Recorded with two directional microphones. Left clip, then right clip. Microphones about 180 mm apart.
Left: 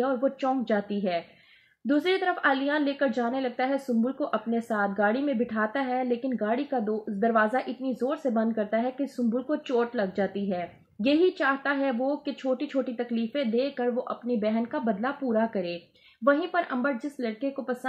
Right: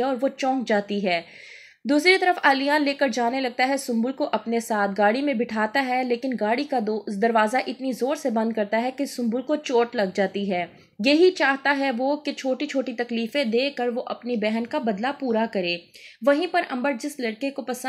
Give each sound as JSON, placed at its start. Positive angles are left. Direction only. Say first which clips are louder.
{"t": 0.0, "sound": "speech", "louder": "right 3 dB", "side_deg": -25}
{"t": 1.9, "sound": "speech", "louder": "right 7 dB", "side_deg": -25}